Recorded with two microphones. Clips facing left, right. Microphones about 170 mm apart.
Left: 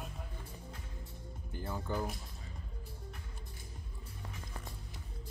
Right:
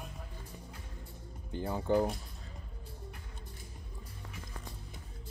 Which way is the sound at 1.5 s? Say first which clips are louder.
Right 8 dB; 25° right (ahead or behind).